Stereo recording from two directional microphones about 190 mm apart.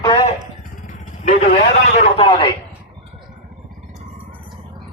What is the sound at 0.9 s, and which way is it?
Vehicle, 40° left (ahead or behind).